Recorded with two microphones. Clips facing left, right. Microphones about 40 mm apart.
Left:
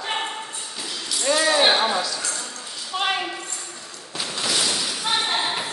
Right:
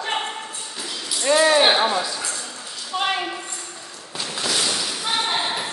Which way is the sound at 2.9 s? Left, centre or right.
Centre.